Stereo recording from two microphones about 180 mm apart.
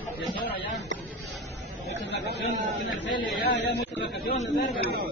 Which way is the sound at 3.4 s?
65° left (ahead or behind).